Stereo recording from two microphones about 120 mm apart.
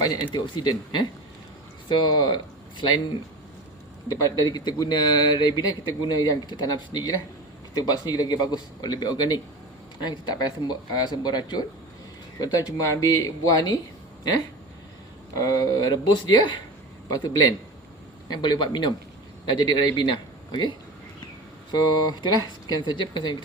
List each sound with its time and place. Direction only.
0.3 s a man's voice: 40° left (ahead or behind)
4.4 s a man's voice: 35° left (ahead or behind)
15.3 s a man's voice: 30° left (ahead or behind)